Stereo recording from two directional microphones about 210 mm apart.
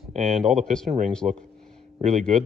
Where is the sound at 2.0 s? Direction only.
35° right (ahead or behind).